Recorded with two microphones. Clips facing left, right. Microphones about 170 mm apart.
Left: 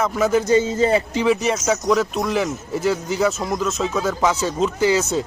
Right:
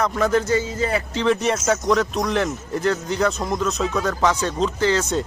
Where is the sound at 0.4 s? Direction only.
20° left (ahead or behind).